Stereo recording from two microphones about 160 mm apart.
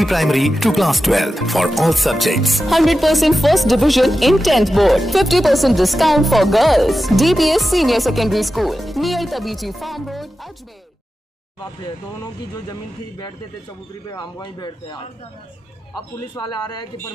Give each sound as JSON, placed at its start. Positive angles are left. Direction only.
{"t": 0.0, "sound": "speech", "side_deg": 0}
{"t": 14.1, "sound": "a man's voice", "side_deg": 25}
{"t": 16.3, "sound": "a man's voice", "side_deg": 25}